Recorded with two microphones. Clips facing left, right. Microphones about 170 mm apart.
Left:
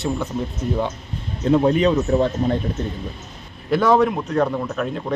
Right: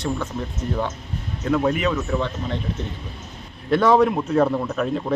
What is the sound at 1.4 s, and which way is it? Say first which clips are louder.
Speech: left 5 dB; 30° left (ahead or behind).